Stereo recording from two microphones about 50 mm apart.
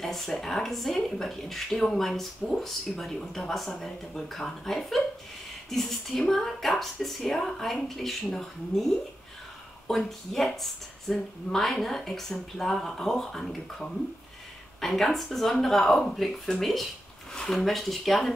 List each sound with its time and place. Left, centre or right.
0.0 s speech: centre
16.4 s a sound: centre
17.4 s speech: centre